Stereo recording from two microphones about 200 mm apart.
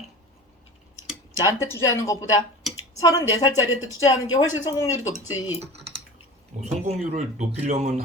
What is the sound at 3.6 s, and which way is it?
Speech, 75° left (ahead or behind).